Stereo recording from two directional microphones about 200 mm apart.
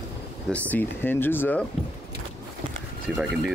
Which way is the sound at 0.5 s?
10° left (ahead or behind).